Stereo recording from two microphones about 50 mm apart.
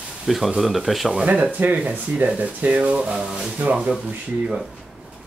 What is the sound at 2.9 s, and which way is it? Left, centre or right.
Speech, centre.